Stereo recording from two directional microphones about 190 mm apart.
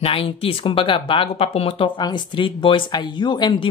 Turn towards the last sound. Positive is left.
turn(degrees=25)  # may be behind; listen again after turning